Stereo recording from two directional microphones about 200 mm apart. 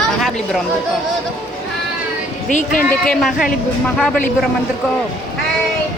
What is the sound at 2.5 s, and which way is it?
Speech, 40° left (ahead or behind).